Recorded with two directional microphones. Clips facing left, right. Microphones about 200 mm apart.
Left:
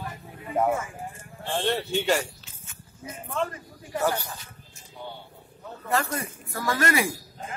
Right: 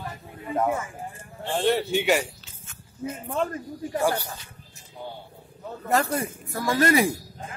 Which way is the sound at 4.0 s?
15° right (ahead or behind).